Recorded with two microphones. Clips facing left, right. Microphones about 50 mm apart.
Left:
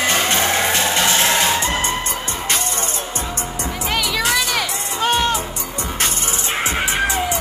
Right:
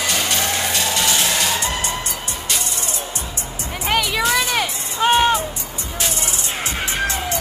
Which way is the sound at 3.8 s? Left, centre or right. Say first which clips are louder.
Right 2 dB; centre.